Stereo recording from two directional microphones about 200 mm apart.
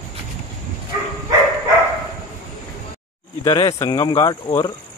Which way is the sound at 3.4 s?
20° left (ahead or behind).